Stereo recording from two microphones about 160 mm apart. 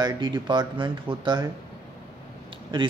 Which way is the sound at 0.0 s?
30° right (ahead or behind).